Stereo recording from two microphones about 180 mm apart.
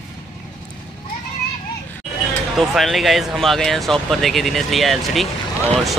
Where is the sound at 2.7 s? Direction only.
Centre (ahead or behind).